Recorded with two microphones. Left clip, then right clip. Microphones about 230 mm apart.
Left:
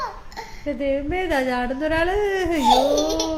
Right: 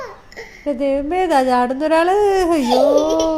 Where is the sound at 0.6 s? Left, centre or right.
Right.